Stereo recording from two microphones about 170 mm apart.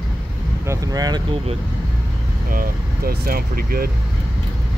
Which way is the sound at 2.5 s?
60° right (ahead or behind).